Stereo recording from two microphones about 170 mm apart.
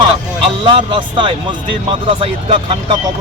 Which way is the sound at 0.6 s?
30° right (ahead or behind).